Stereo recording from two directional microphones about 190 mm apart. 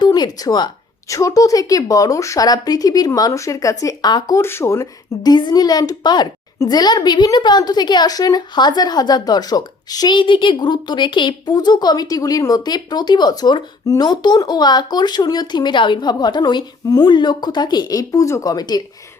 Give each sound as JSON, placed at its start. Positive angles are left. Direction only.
{"t": 0.0, "sound": "a woman's voice", "side_deg": 20}